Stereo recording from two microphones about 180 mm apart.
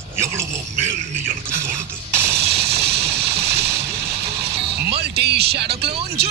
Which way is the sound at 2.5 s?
65° right (ahead or behind).